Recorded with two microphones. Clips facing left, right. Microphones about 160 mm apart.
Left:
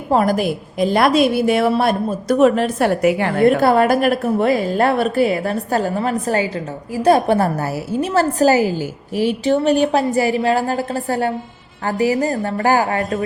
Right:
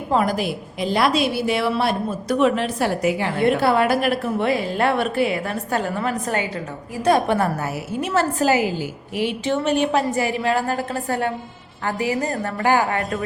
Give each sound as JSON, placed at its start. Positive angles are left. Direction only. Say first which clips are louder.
{"t": 0.1, "sound": "a woman's voice", "louder": "left 4 dB", "side_deg": 45}